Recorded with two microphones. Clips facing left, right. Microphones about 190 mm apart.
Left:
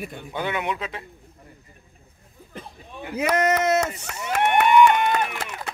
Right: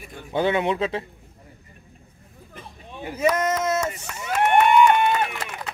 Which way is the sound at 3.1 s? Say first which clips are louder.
Left 1 dB; 65° left (ahead or behind).